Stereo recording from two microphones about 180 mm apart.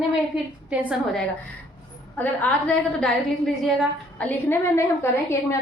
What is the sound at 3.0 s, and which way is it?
Speech, centre (ahead or behind).